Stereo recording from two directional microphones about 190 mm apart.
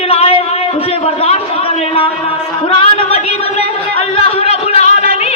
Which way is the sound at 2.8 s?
30° left (ahead or behind).